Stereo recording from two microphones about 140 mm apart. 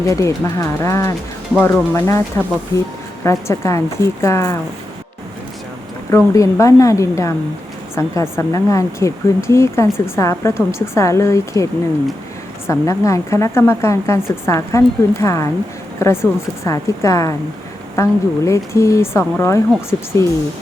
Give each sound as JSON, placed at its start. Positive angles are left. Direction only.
{"t": 0.0, "sound": "speech", "side_deg": 20}
{"t": 6.1, "sound": "speech", "side_deg": 20}